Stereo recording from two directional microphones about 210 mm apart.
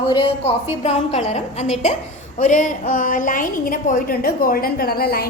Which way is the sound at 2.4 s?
35° left (ahead or behind).